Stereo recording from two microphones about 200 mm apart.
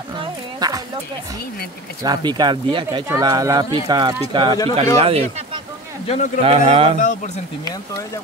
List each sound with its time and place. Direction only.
0.2 s a sound: 20° right (ahead or behind)
2.0 s speech: 20° right (ahead or behind)
6.0 s speech: 35° left (ahead or behind)
6.4 s speech: 30° right (ahead or behind)